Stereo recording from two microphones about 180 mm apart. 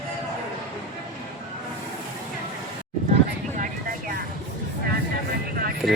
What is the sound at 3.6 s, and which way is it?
Vehicle, 55° right (ahead or behind).